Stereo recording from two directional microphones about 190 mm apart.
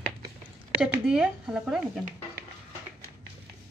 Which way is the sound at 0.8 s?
5° right (ahead or behind).